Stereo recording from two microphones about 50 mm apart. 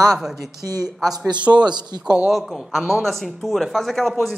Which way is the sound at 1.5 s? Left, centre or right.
Right.